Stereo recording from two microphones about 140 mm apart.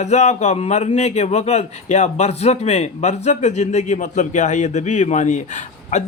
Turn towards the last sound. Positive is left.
turn(degrees=60)  # may be behind; listen again after turning